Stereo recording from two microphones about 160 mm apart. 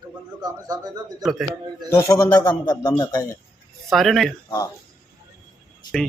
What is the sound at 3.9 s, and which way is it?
Speech, centre (ahead or behind).